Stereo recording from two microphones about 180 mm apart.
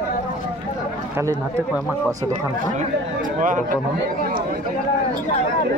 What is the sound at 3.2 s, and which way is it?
Speech, 45° right (ahead or behind).